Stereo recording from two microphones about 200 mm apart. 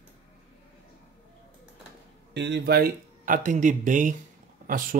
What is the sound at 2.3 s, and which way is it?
Speech, 60° right (ahead or behind).